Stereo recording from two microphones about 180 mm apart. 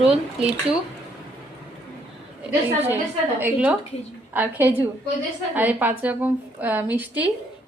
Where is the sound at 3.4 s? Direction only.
10° right (ahead or behind).